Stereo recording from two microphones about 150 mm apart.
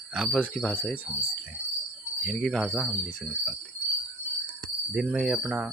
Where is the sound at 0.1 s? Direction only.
5° left (ahead or behind).